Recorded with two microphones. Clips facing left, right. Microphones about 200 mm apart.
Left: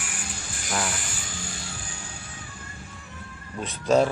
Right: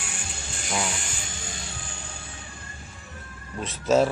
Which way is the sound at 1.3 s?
25° right (ahead or behind).